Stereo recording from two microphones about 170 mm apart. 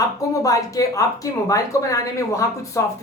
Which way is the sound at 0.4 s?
20° left (ahead or behind).